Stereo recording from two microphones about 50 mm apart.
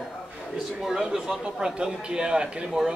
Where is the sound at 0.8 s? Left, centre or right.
Centre.